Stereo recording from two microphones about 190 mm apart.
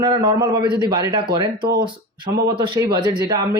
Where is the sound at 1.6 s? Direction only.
55° right (ahead or behind).